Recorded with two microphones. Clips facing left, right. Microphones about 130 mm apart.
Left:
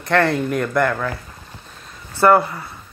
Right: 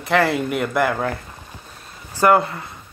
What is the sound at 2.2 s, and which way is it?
Speech, 15° right (ahead or behind).